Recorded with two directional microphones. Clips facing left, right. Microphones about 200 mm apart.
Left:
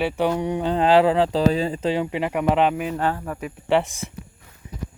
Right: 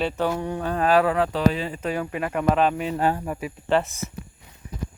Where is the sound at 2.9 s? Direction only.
10° right (ahead or behind).